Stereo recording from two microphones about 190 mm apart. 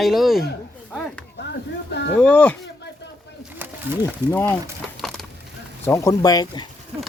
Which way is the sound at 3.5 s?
10° right (ahead or behind).